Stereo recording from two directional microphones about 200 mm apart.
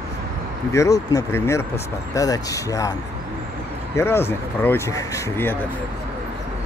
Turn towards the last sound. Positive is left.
turn(degrees=15)  # may be behind; listen again after turning